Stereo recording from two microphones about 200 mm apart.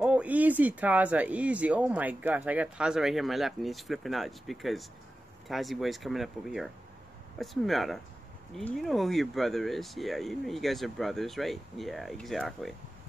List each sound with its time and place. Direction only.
0.0 s speech: 5° right (ahead or behind)